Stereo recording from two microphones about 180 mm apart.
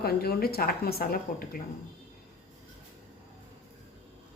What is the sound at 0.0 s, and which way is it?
Speech, 60° left (ahead or behind).